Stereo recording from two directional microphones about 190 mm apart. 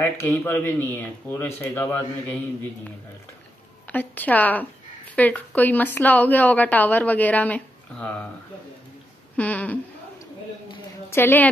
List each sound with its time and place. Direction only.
0.0 s a woman's voice: 10° left (ahead or behind)
3.9 s a woman's voice: 10° left (ahead or behind)
9.4 s a woman's voice: 10° left (ahead or behind)
11.1 s a woman's voice: 10° left (ahead or behind)